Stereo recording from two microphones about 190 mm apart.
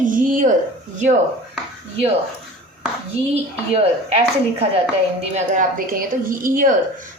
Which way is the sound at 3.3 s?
30° right (ahead or behind).